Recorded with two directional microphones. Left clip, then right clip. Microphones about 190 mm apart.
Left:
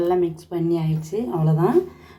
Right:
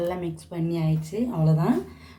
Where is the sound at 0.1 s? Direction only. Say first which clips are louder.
Left 10 dB; 15° left (ahead or behind).